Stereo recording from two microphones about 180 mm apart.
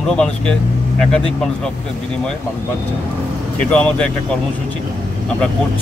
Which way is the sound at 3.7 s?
5° left (ahead or behind).